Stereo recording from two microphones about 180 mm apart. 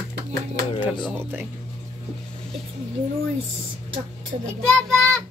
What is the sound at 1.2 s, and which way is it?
Speech, 10° right (ahead or behind).